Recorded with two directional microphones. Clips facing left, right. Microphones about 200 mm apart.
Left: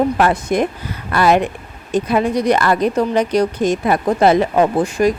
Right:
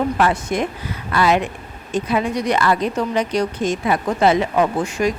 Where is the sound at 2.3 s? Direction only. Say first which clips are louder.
Left 5 dB; 35° left (ahead or behind).